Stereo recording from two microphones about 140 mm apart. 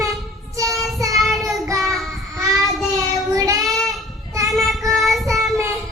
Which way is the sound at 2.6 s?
25° right (ahead or behind).